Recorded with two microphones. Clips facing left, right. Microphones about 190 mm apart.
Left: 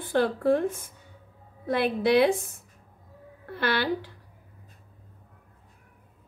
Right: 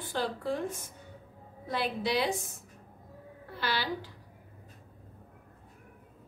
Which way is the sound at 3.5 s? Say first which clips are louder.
Left 7 dB; 60° left (ahead or behind).